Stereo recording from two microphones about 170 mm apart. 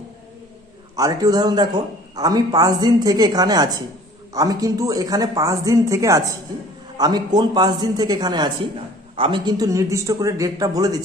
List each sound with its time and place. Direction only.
0.9 s a man's voice: 20° right (ahead or behind)